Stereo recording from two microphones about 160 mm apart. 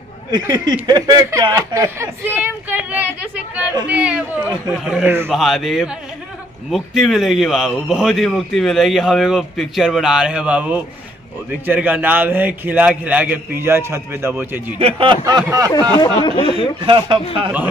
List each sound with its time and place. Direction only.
0.3 s a man's voice: 25° right (ahead or behind)
14.8 s speech: 35° right (ahead or behind)
15.2 s speech: 25° right (ahead or behind)
16.0 s speech: 30° left (ahead or behind)
16.8 s speech: 35° right (ahead or behind)